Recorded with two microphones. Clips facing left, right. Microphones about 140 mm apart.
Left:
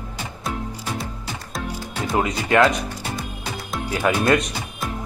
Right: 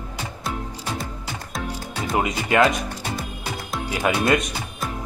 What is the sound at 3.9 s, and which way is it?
Speech, 15° right (ahead or behind).